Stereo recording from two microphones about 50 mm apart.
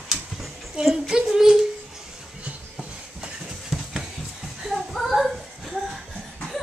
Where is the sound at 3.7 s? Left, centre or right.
Centre.